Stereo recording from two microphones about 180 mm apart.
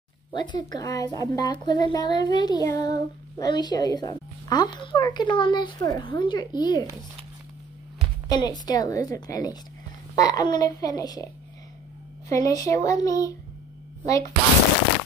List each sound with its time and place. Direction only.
0.3 s speech: 25° left (ahead or behind)
8.3 s speech: 20° left (ahead or behind)
12.3 s speech: 20° left (ahead or behind)